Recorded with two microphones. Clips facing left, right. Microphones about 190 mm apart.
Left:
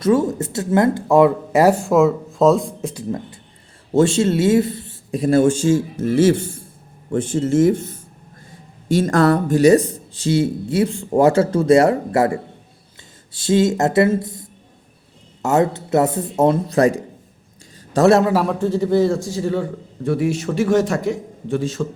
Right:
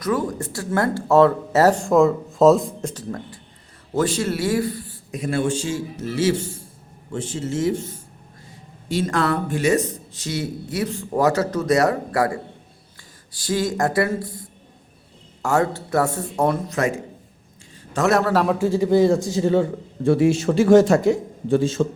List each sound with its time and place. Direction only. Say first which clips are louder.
0.0 s speech: left 6 dB; 25° left (ahead or behind); by 2.9 s centre (ahead or behind)
2.9 s speech: left 5 dB; 10° left (ahead or behind)
3.9 s a man's voice: left 6 dB; 25° left (ahead or behind)
17.9 s a man's voice: left 6 dB; 35° left (ahead or behind)
18.2 s speech: left 2 dB; 15° left (ahead or behind)
18.4 s a man's voice: even; 10° right (ahead or behind); by 21.8 s 25° right (ahead or behind)